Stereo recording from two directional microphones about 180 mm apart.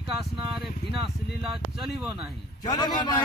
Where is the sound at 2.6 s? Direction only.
25° left (ahead or behind).